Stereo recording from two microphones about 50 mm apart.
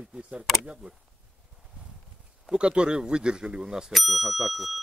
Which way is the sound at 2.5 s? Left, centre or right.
Right.